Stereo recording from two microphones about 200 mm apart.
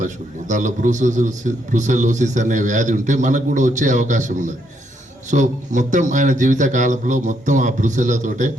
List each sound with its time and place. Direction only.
0.0 s a man's voice: 40° right (ahead or behind)